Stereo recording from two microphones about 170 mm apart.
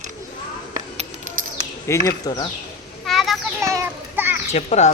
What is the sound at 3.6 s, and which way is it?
Children playing, 15° right (ahead or behind).